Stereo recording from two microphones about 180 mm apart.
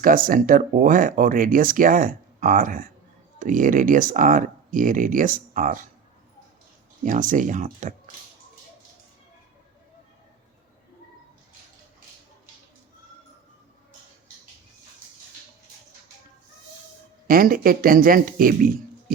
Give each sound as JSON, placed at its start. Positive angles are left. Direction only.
{"t": 0.0, "sound": "speech", "side_deg": -50}
{"t": 7.0, "sound": "speech", "side_deg": -45}
{"t": 17.2, "sound": "speech", "side_deg": -50}